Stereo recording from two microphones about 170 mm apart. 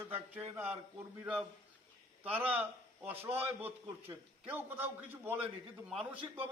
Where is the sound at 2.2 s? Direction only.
10° right (ahead or behind).